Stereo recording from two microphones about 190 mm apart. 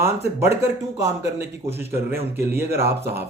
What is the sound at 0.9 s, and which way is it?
A man's voice, 15° right (ahead or behind).